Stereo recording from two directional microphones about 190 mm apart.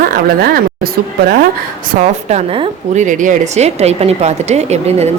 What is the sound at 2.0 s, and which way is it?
A woman's voice, 35° right (ahead or behind).